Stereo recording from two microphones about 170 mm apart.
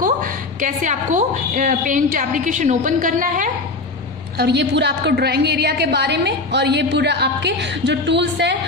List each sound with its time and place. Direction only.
0.0 s a woman's voice: 55° right (ahead or behind)
4.4 s a woman's voice: 80° right